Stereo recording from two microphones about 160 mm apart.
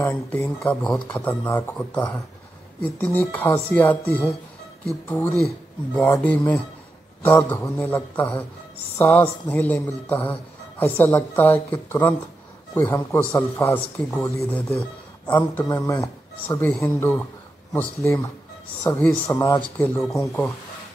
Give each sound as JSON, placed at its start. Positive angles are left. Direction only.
{"t": 0.0, "sound": "a woman's voice", "side_deg": 10}
{"t": 15.6, "sound": "a woman's voice", "side_deg": 20}
{"t": 19.6, "sound": "a woman's voice", "side_deg": 10}